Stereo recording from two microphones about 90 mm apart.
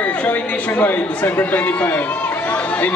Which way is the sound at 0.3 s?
20° left (ahead or behind).